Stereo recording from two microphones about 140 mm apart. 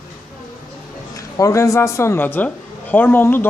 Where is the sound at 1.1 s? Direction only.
25° left (ahead or behind).